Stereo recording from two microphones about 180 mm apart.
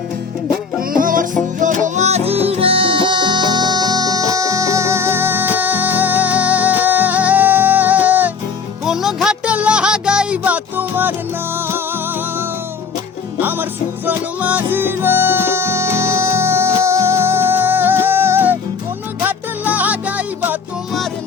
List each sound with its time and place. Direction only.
0.8 s music: 50° right (ahead or behind); by 11.1 s 10° right (ahead or behind)
13.4 s music: 10° right (ahead or behind)